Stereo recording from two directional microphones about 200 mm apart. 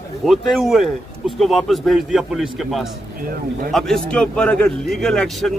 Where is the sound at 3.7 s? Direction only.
Centre (ahead or behind).